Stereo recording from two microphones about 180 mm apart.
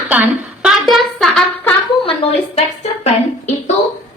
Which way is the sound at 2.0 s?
35° left (ahead or behind).